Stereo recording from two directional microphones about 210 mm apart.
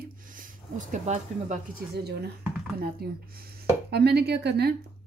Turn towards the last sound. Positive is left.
turn(degrees=-50)  # may be behind; listen again after turning